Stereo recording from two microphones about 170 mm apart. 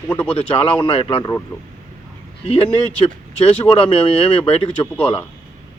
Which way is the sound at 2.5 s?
35° left (ahead or behind).